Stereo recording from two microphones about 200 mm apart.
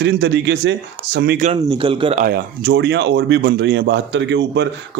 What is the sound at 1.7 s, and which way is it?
Speech, 25° right (ahead or behind).